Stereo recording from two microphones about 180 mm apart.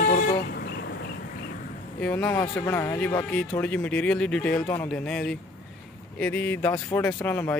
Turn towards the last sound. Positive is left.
turn(degrees=10)  # may be behind; listen again after turning